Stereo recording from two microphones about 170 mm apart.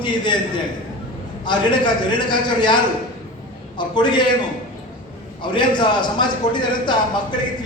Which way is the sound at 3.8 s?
25° left (ahead or behind).